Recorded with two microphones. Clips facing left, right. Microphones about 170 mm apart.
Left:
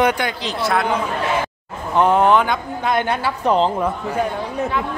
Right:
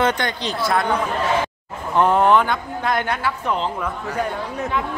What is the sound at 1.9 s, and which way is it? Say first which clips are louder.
A woman's voice: left 1 dB; 15° left (ahead or behind).